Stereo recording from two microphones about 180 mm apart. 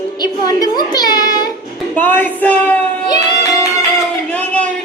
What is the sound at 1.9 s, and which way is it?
Music, 10° left (ahead or behind).